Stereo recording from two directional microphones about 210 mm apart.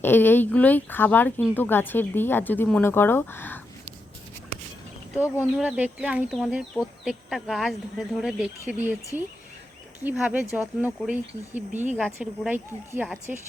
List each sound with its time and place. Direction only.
0.0 s speech: 10° left (ahead or behind)
5.1 s speech: 5° right (ahead or behind)
11.7 s speech: 35° right (ahead or behind)
11.9 s speech: centre (ahead or behind)